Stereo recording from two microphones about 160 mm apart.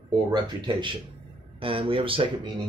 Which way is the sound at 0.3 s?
30° right (ahead or behind).